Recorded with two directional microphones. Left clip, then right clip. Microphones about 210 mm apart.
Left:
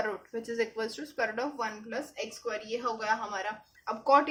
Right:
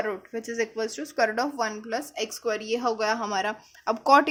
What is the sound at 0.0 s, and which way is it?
Speech, 25° right (ahead or behind).